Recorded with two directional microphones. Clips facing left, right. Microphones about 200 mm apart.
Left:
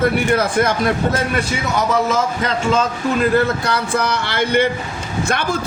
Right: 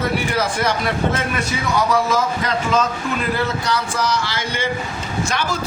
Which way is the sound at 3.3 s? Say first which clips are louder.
Left 4 dB; 55° left (ahead or behind).